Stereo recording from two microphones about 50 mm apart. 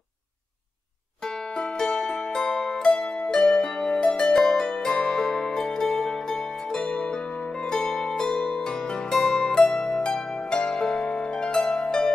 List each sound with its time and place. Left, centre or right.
1.2 s music: centre
2.9 s harp: centre